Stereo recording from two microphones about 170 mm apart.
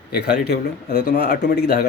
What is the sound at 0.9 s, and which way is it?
Speech, 70° left (ahead or behind).